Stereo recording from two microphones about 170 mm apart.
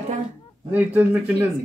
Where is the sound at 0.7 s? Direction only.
10° right (ahead or behind).